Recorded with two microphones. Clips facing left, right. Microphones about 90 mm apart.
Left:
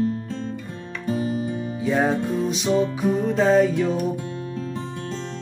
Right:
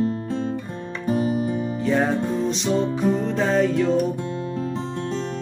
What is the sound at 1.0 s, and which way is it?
Music, 15° right (ahead or behind).